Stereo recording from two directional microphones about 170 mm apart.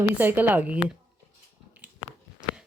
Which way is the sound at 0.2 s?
10° right (ahead or behind).